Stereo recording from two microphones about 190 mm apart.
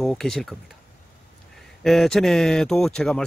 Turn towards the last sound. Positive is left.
turn(degrees=5)  # may be behind; listen again after turning